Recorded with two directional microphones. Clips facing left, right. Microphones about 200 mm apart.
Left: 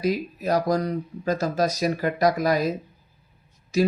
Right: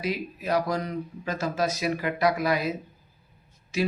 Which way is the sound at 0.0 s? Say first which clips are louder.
Left 5 dB; 40° left (ahead or behind).